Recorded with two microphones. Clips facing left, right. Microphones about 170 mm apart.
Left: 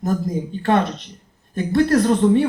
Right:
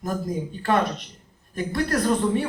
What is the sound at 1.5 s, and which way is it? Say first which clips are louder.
Speech: left 8 dB; 25° left (ahead or behind).